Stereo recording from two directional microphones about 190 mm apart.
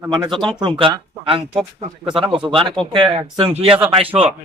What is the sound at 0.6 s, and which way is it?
Speech, 25° right (ahead or behind).